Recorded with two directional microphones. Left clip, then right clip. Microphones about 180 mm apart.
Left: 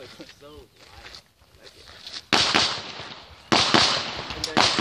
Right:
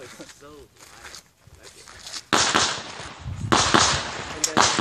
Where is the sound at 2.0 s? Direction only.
45° right (ahead or behind).